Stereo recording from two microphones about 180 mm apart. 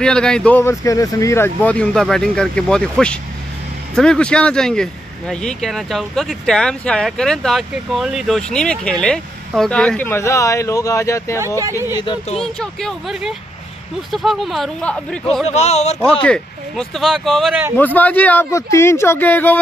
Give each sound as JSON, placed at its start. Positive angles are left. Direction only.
{"t": 0.0, "sound": "speech", "side_deg": 5}
{"t": 11.3, "sound": "speech", "side_deg": -15}
{"t": 12.0, "sound": "speech", "side_deg": 25}
{"t": 12.4, "sound": "speech", "side_deg": 0}
{"t": 15.4, "sound": "speech", "side_deg": 40}
{"t": 16.0, "sound": "speech", "side_deg": 5}
{"t": 17.7, "sound": "speech", "side_deg": 10}